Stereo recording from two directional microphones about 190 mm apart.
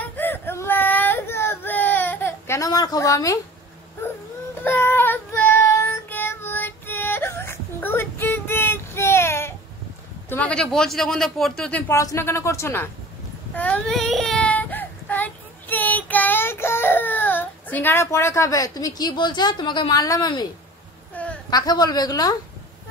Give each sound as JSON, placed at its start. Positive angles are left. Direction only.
{"t": 0.0, "sound": "baby cry", "side_deg": 10}
{"t": 4.6, "sound": "child singing", "side_deg": 10}
{"t": 10.3, "sound": "speech", "side_deg": 5}
{"t": 13.6, "sound": "child singing", "side_deg": 5}
{"t": 21.1, "sound": "a sound", "side_deg": 10}
{"t": 21.5, "sound": "a woman's voice", "side_deg": 20}